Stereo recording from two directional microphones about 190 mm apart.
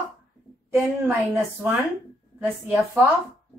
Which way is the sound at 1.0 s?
10° right (ahead or behind).